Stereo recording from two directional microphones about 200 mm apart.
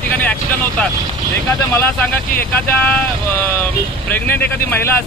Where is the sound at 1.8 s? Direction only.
10° left (ahead or behind).